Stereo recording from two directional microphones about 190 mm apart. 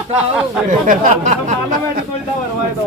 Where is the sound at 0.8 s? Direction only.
40° right (ahead or behind).